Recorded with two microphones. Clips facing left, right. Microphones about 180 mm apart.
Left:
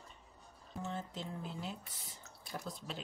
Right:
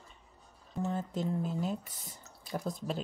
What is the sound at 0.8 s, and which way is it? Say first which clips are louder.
Speech: right 9 dB; 45° right (ahead or behind).